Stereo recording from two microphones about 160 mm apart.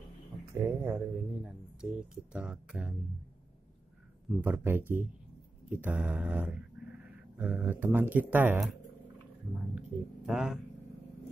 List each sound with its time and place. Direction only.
0.7 s speech: 15° right (ahead or behind)
4.4 s speech: 15° right (ahead or behind)
5.7 s a sound: 10° right (ahead or behind)
9.8 s speech: 5° right (ahead or behind)